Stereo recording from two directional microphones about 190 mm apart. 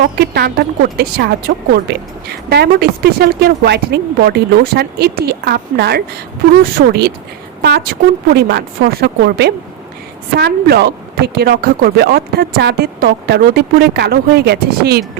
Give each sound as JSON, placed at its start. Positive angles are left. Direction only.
{"t": 0.2, "sound": "speech", "side_deg": -55}